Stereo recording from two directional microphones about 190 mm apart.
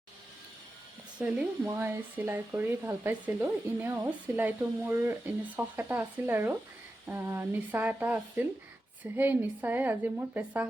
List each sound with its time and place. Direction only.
1.2 s speech: 10° right (ahead or behind)